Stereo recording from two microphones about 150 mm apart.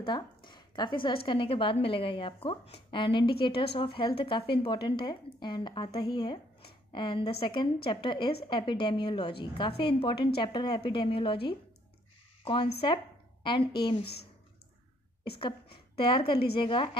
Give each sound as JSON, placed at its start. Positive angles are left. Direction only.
{"t": 0.0, "sound": "speech", "side_deg": 30}
{"t": 12.8, "sound": "a woman's voice", "side_deg": 30}
{"t": 16.0, "sound": "speech", "side_deg": 35}